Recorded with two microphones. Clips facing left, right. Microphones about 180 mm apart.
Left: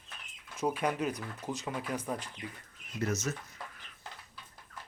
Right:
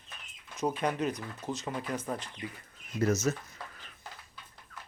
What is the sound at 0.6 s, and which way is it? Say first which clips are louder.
Speech: right 1 dB; 10° left (ahead or behind).